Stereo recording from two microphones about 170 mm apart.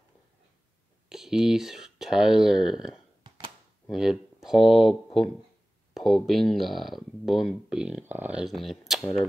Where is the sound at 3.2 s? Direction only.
30° right (ahead or behind).